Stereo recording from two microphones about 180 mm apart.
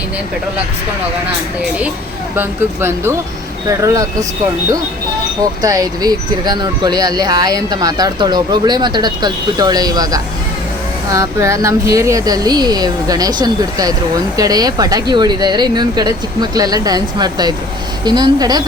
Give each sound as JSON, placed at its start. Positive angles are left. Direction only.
{"t": 2.3, "sound": "speech", "side_deg": -10}
{"t": 5.6, "sound": "speech", "side_deg": -20}